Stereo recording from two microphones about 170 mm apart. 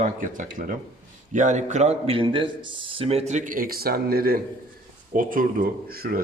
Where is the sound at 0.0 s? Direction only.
50° right (ahead or behind).